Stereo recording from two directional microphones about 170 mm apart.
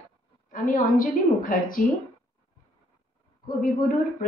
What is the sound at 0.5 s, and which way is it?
A woman's voice, 50° left (ahead or behind).